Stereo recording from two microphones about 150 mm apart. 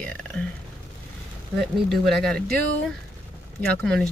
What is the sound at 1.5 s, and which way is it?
Speech, centre (ahead or behind).